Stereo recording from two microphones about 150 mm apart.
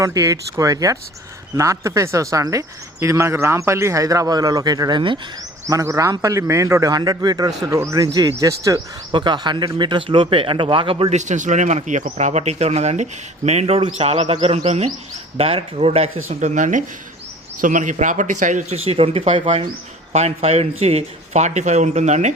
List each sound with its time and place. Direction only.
0.0 s a man's voice: 20° right (ahead or behind)
5.6 s a man's voice: 20° right (ahead or behind); by 11.2 s 35° right (ahead or behind)
11.2 s speech: 55° right (ahead or behind)